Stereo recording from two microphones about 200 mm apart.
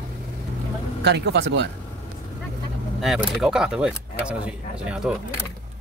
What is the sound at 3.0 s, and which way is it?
Speech, centre (ahead or behind).